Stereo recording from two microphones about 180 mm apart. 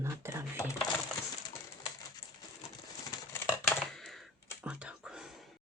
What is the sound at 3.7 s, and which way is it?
Computer keyboard, centre (ahead or behind).